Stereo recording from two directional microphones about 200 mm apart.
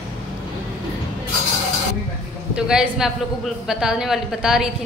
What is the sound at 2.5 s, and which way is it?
A woman's voice, 5° right (ahead or behind).